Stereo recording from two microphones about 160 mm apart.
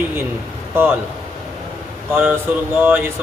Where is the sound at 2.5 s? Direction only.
10° right (ahead or behind).